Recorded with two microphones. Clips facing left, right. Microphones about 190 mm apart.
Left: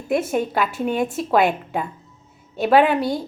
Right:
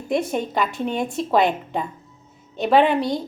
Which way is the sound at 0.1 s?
5° left (ahead or behind).